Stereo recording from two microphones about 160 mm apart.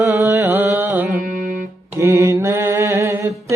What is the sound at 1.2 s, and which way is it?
Music, 60° right (ahead or behind).